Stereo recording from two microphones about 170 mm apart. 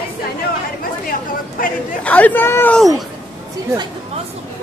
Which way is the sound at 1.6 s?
60° left (ahead or behind).